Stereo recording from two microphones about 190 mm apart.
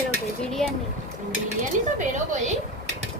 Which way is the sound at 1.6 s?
40° right (ahead or behind).